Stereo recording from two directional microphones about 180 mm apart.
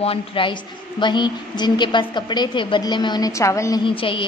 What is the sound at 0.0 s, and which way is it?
A woman's voice, 30° left (ahead or behind).